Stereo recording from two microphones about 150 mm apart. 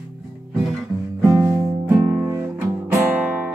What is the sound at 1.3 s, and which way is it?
Music, 20° right (ahead or behind).